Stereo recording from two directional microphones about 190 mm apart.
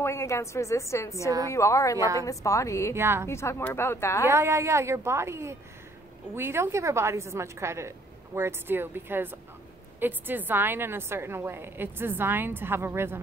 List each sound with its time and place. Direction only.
0.0 s a woman's voice: 15° left (ahead or behind)
2.0 s a woman's voice: 15° right (ahead or behind)
2.2 s a woman's voice: 15° left (ahead or behind)
2.9 s a woman's voice: 15° right (ahead or behind)
3.3 s a woman's voice: 15° left (ahead or behind)
4.3 s a woman's voice: 15° right (ahead or behind)